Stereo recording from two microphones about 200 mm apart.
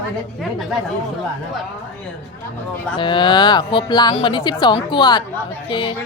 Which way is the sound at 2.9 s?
25° left (ahead or behind).